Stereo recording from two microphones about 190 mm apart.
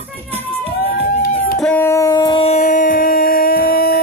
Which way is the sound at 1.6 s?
10° left (ahead or behind).